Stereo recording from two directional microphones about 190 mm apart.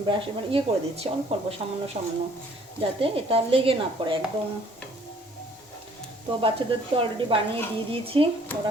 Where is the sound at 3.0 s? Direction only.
30° right (ahead or behind).